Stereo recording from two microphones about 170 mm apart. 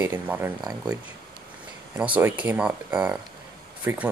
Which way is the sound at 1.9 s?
10° right (ahead or behind).